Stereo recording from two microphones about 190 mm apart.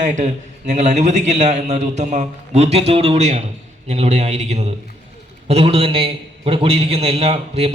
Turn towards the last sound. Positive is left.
turn(degrees=-30)  # may be behind; listen again after turning